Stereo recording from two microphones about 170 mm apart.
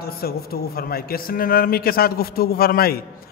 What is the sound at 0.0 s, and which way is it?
A man's voice, 65° left (ahead or behind).